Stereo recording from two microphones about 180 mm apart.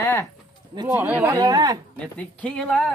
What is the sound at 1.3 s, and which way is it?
Speech, 20° right (ahead or behind).